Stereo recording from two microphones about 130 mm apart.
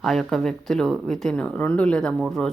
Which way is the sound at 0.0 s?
5° left (ahead or behind).